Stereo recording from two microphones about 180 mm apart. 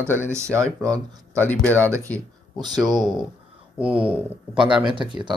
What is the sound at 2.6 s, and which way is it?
Speech, 25° right (ahead or behind).